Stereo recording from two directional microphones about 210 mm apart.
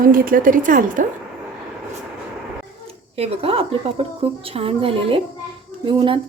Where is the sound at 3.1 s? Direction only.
30° right (ahead or behind).